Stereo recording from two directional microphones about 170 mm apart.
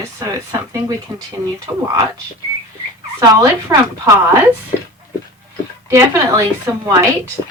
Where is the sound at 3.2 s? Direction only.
20° right (ahead or behind).